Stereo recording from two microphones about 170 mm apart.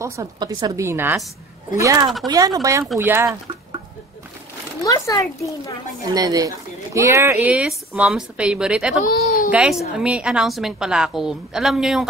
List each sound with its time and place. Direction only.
0.0 s speech: 20° right (ahead or behind)
4.8 s speech: 20° left (ahead or behind)
6.0 s speech: 20° right (ahead or behind); by 9.0 s 5° right (ahead or behind)
9.0 s speech: 60° left (ahead or behind)
9.5 s a woman's voice: 5° right (ahead or behind)